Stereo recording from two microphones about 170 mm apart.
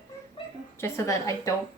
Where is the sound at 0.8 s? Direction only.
15° left (ahead or behind).